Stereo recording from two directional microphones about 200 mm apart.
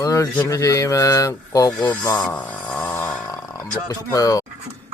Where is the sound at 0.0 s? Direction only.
15° left (ahead or behind).